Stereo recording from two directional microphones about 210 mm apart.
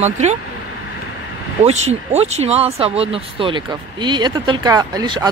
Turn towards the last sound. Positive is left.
turn(degrees=-20)  # may be behind; listen again after turning